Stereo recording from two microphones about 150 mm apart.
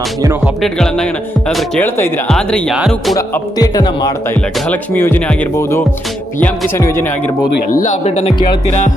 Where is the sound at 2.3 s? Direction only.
5° left (ahead or behind).